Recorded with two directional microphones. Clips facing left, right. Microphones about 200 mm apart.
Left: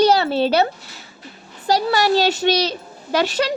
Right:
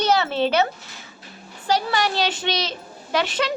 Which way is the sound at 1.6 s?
40° left (ahead or behind).